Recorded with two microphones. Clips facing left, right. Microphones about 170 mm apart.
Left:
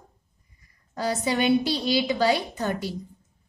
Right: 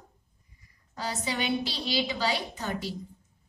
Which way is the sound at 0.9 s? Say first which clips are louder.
Left 7 dB; 50° left (ahead or behind).